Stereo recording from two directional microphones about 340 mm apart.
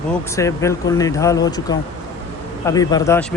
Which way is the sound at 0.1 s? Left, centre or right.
Centre.